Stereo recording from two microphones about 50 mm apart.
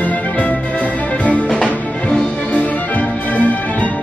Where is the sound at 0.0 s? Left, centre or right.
Left.